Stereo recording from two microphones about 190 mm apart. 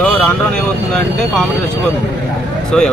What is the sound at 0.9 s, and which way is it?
Speech, 5° left (ahead or behind).